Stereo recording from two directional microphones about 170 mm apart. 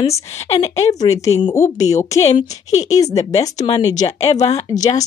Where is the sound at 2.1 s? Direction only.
40° left (ahead or behind).